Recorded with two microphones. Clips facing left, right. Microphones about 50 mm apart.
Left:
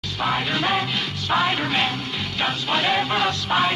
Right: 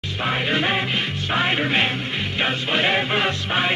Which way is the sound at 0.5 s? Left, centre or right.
Right.